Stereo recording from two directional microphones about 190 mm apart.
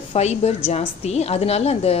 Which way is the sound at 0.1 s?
35° left (ahead or behind).